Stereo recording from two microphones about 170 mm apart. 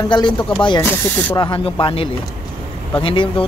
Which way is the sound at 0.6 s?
30° left (ahead or behind).